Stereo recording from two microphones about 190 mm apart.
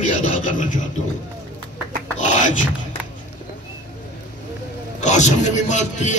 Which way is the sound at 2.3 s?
40° left (ahead or behind).